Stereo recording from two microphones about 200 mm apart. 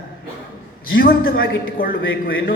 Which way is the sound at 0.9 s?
50° left (ahead or behind).